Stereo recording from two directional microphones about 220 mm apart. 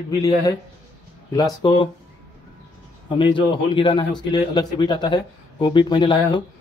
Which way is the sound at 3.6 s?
25° left (ahead or behind).